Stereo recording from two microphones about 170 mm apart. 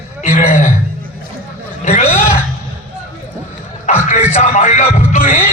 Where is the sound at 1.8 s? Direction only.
40° left (ahead or behind).